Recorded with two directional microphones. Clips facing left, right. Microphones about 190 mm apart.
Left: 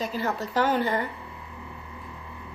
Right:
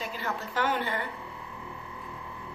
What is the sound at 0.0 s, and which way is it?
A woman's voice, 40° left (ahead or behind).